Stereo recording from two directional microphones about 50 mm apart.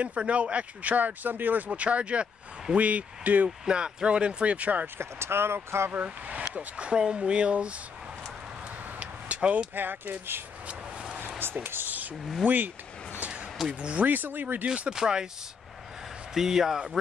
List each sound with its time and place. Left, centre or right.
0.0 s speech: right
3.4 s speech: centre
4.9 s speech: right
6.0 s speech: right
9.0 s vehicle: right
9.8 s speech: right
10.7 s vehicle: right
11.3 s speech: right
13.7 s speech: right
14.9 s a man's voice: centre
16.3 s a man's voice: centre